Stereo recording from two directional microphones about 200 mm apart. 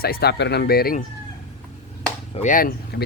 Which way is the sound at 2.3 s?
35° left (ahead or behind).